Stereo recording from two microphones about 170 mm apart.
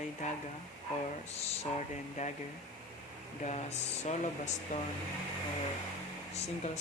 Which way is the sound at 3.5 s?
40° left (ahead or behind).